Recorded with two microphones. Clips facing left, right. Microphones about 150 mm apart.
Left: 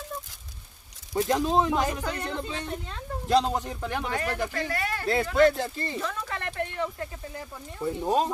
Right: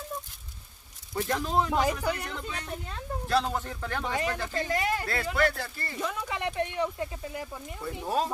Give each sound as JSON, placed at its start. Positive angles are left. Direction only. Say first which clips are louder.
{"t": 1.1, "sound": "speech", "louder": "left 4 dB", "side_deg": 20}
{"t": 1.7, "sound": "speech", "louder": "even", "side_deg": -10}
{"t": 2.2, "sound": "speech", "louder": "left 5 dB", "side_deg": 25}
{"t": 4.1, "sound": "speech", "louder": "right 1 dB", "side_deg": -15}
{"t": 5.0, "sound": "speech", "louder": "left 6 dB", "side_deg": 20}
{"t": 5.9, "sound": "speech", "louder": "even", "side_deg": -10}
{"t": 7.8, "sound": "speech", "louder": "left 5 dB", "side_deg": 20}